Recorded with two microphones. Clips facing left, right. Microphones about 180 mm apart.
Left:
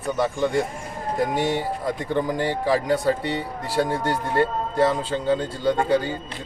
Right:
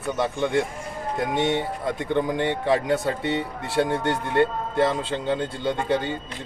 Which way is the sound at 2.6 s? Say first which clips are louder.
Left 3 dB; centre (ahead or behind).